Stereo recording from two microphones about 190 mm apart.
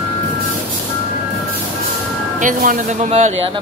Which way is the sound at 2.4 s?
45° right (ahead or behind).